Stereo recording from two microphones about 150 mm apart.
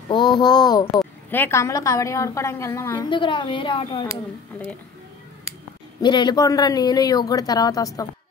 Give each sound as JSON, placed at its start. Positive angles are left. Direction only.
{"t": 0.1, "sound": "speech", "side_deg": 30}
{"t": 1.3, "sound": "speech", "side_deg": 15}
{"t": 3.1, "sound": "speech", "side_deg": 35}
{"t": 5.9, "sound": "speech", "side_deg": 30}